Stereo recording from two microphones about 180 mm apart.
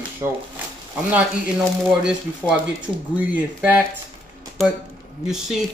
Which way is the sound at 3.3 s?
10° right (ahead or behind).